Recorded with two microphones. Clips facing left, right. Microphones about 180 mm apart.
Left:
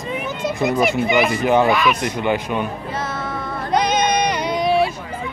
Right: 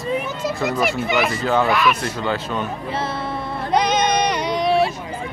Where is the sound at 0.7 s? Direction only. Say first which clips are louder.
Left 5 dB; centre (ahead or behind).